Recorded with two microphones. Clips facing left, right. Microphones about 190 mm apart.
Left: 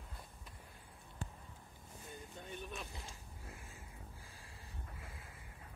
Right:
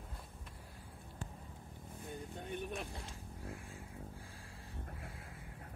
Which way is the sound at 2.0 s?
60° right (ahead or behind).